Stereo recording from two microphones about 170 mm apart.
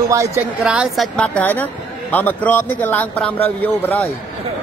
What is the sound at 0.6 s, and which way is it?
Speech, 5° right (ahead or behind).